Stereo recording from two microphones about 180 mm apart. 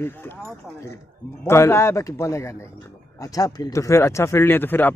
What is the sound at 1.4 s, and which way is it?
Speech, 15° left (ahead or behind).